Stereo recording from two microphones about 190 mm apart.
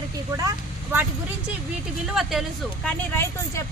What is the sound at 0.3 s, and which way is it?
Vehicle, 15° right (ahead or behind).